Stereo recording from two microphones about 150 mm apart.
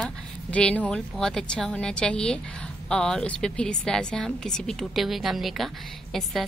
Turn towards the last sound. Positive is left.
turn(degrees=0)  # may be behind; listen again after turning